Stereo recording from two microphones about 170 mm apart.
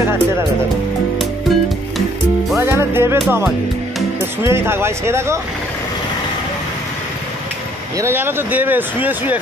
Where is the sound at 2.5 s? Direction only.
15° right (ahead or behind).